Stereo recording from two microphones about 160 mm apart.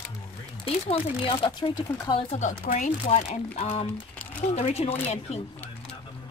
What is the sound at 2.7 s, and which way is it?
Speech, 45° left (ahead or behind).